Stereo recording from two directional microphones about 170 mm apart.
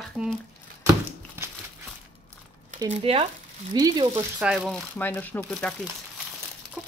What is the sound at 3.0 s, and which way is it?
Speech, 35° right (ahead or behind).